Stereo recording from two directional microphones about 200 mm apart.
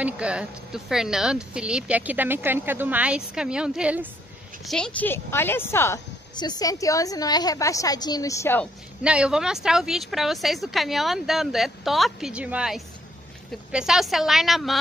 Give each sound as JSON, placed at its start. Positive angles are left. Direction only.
{"t": 0.0, "sound": "a woman's voice", "side_deg": -5}
{"t": 9.0, "sound": "speech", "side_deg": -5}